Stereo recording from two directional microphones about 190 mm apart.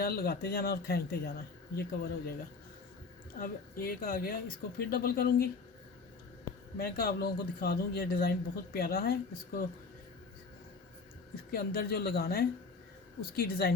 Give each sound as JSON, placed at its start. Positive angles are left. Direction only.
{"t": 0.0, "sound": "speech", "side_deg": 55}
{"t": 3.3, "sound": "speech", "side_deg": 50}
{"t": 6.7, "sound": "speech", "side_deg": 50}
{"t": 11.5, "sound": "speech", "side_deg": 55}